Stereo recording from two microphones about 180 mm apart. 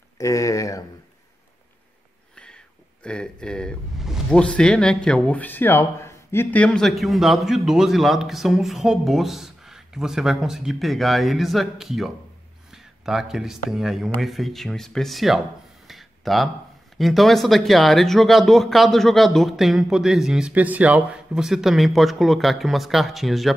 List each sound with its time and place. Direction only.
0.2 s speech: 15° left (ahead or behind)
2.3 s speech: 5° left (ahead or behind)
12.7 s a sound: centre (ahead or behind)
13.7 s speech: centre (ahead or behind)
15.9 s a sound: centre (ahead or behind)
17.0 s speech: centre (ahead or behind)